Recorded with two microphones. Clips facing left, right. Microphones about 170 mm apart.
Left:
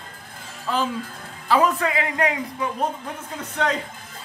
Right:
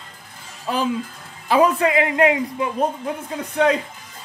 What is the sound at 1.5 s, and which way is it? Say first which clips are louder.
Speech: right 4 dB; 20° right (ahead or behind).